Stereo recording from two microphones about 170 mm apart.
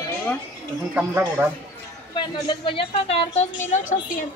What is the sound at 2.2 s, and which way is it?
A woman's voice, 25° left (ahead or behind).